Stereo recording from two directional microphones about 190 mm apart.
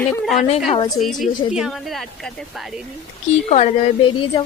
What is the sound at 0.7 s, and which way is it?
Speech, 25° left (ahead or behind).